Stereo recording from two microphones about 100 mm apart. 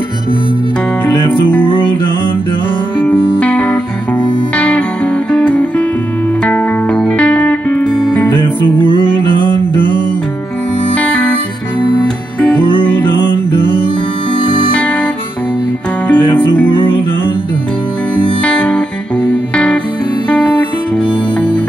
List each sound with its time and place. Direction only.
3.1 s music: 15° left (ahead or behind)
11.0 s music: 15° left (ahead or behind)
14.7 s music: 15° left (ahead or behind)
16.1 s music: 15° left (ahead or behind)
18.4 s music: 15° left (ahead or behind)